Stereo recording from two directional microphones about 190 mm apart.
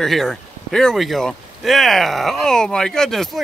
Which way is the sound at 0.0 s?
Centre (ahead or behind).